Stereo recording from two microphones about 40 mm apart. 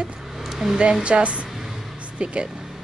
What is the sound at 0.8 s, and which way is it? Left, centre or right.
Speech, right.